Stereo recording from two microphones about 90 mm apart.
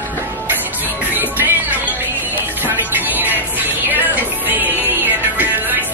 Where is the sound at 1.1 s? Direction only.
20° right (ahead or behind).